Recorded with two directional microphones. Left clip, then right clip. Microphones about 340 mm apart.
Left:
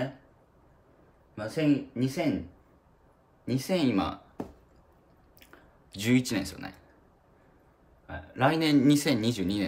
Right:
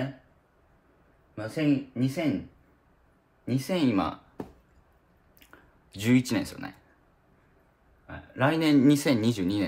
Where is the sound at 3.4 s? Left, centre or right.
Centre.